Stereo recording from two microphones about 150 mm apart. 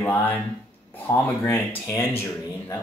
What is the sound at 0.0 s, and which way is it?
Speech, 10° left (ahead or behind).